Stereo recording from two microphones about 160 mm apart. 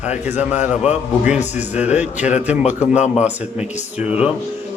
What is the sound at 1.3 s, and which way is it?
A man's voice, 45° left (ahead or behind).